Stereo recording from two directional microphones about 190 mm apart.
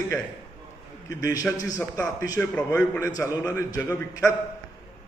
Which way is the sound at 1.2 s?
20° left (ahead or behind).